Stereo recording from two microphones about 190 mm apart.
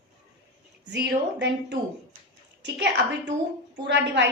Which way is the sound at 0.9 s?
65° right (ahead or behind).